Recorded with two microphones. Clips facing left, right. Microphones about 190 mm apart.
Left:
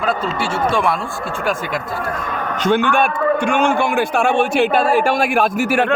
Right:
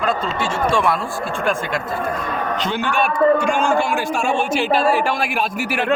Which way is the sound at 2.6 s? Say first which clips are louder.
Left 8 dB; 55° left (ahead or behind).